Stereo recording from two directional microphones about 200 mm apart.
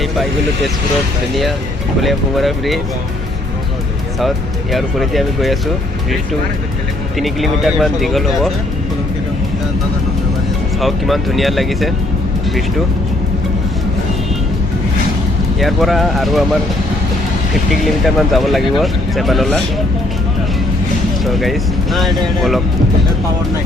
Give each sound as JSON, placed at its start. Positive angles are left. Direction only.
{"t": 2.0, "sound": "speech", "side_deg": 0}
{"t": 4.7, "sound": "speech", "side_deg": 0}
{"t": 7.2, "sound": "speech", "side_deg": 0}
{"t": 10.8, "sound": "speech", "side_deg": 0}
{"t": 15.6, "sound": "speech", "side_deg": 0}
{"t": 18.0, "sound": "speech", "side_deg": 0}
{"t": 21.2, "sound": "speech", "side_deg": 0}